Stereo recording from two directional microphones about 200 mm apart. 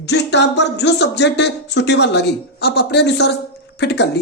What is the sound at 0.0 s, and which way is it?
A man's voice, 60° left (ahead or behind).